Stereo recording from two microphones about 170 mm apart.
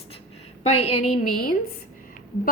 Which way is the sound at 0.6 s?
40° left (ahead or behind).